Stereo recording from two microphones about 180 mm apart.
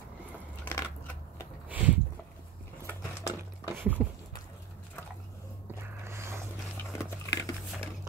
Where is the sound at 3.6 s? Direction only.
10° right (ahead or behind).